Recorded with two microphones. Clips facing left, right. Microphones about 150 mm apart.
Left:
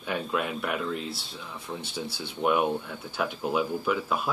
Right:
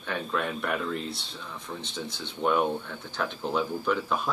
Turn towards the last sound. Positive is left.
turn(degrees=5)  # may be behind; listen again after turning